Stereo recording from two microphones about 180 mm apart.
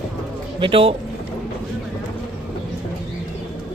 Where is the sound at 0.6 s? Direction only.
30° right (ahead or behind).